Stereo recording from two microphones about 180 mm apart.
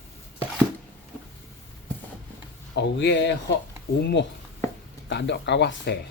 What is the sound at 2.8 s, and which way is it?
Speech, 80° left.